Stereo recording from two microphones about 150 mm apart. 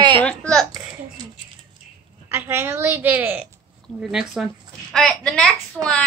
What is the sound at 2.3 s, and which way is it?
A woman's voice, 15° right (ahead or behind).